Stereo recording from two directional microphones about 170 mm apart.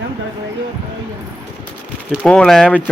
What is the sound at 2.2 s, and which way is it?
Speech, 5° left (ahead or behind).